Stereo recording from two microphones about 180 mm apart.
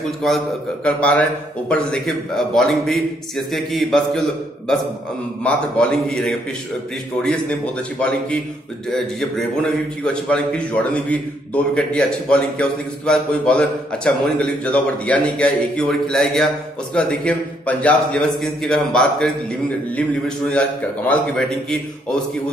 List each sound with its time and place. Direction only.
0.2 s a man's voice: centre (ahead or behind)